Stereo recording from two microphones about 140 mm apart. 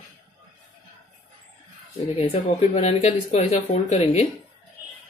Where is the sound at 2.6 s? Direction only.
55° left (ahead or behind).